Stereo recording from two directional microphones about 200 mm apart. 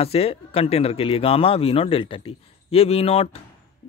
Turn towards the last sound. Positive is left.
turn(degrees=30)  # may be behind; listen again after turning